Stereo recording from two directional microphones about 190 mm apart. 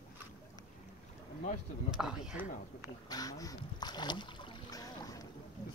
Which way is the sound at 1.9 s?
5° right (ahead or behind).